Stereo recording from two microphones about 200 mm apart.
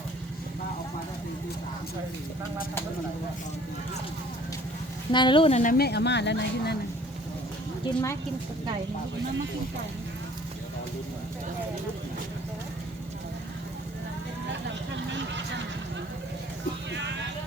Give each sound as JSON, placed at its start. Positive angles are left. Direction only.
{"t": 5.1, "sound": "speech", "side_deg": 25}
{"t": 5.7, "sound": "speech", "side_deg": 55}
{"t": 7.9, "sound": "speech", "side_deg": 15}
{"t": 15.1, "sound": "vehicle", "side_deg": -65}